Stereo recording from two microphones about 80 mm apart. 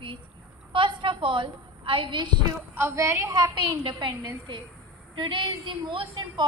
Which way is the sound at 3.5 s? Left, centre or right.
Right.